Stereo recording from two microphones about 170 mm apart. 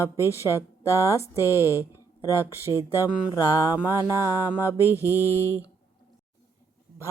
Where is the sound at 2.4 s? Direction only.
15° right (ahead or behind).